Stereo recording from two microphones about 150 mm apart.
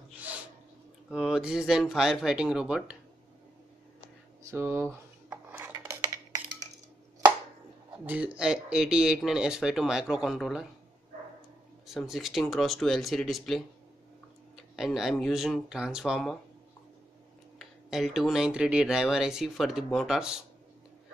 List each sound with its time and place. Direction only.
1.1 s speech: 5° right (ahead or behind)
4.5 s dishes: 15° right (ahead or behind)
8.0 s speech: 10° right (ahead or behind)
11.9 s speech: centre (ahead or behind)
14.8 s speech: centre (ahead or behind)
17.6 s speech: centre (ahead or behind)